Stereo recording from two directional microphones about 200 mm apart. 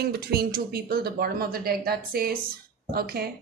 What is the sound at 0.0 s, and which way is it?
Speech, 50° right (ahead or behind).